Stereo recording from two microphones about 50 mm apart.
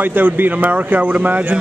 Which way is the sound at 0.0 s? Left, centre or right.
Right.